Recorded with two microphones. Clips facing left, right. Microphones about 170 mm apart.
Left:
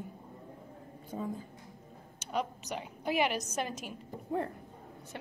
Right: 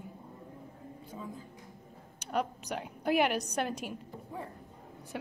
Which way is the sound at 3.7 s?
10° right (ahead or behind).